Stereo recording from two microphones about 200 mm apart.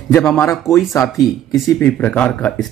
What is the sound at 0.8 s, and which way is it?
Speech, centre (ahead or behind).